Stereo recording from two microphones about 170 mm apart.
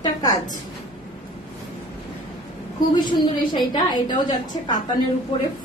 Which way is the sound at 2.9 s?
25° left (ahead or behind).